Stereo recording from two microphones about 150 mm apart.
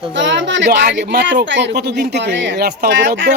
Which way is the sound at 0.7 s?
90° right.